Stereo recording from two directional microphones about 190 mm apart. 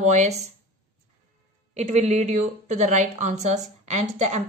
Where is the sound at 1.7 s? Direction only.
35° right (ahead or behind).